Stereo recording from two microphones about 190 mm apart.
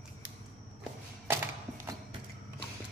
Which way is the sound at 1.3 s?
10° right (ahead or behind).